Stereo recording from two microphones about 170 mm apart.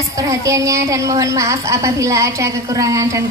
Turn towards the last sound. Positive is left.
turn(degrees=-20)  # may be behind; listen again after turning